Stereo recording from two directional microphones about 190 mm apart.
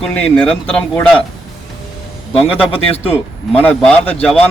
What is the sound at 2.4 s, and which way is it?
Speech, 30° left (ahead or behind).